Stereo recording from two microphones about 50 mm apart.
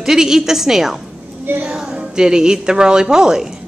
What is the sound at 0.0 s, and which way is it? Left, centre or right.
Speech, centre.